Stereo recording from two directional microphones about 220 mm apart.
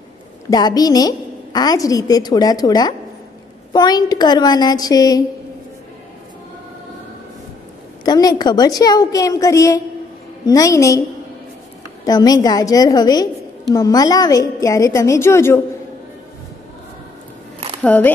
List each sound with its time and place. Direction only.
0.5 s a woman's voice: 15° left (ahead or behind)
8.0 s a woman's voice: 15° left (ahead or behind)
17.8 s a woman's voice: 5° left (ahead or behind)